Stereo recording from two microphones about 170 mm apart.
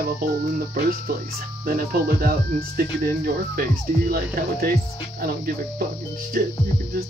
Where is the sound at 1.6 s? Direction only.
60° right (ahead or behind).